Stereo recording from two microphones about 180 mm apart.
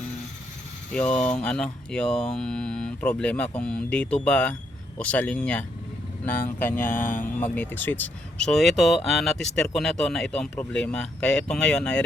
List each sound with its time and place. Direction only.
0.9 s speech: 5° left (ahead or behind)
6.9 s speech: 50° left (ahead or behind)
7.3 s speech: 10° left (ahead or behind)